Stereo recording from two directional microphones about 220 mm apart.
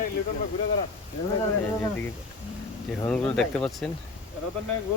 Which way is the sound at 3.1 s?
5° left (ahead or behind).